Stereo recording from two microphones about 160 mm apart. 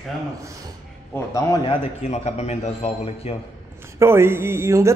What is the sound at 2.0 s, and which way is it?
A man's voice, 45° left (ahead or behind).